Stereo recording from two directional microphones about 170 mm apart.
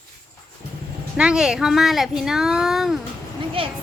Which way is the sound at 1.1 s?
5° right (ahead or behind).